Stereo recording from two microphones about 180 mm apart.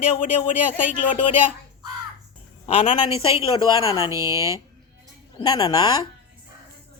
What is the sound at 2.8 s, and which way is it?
Speech, 40° left (ahead or behind).